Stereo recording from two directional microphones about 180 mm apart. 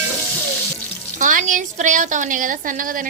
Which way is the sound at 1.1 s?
45° right (ahead or behind).